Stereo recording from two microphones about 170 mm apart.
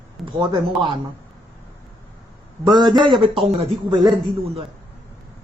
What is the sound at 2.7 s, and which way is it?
Speech, 25° right (ahead or behind).